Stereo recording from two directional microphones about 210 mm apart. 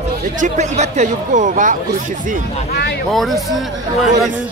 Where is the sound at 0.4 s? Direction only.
35° right (ahead or behind).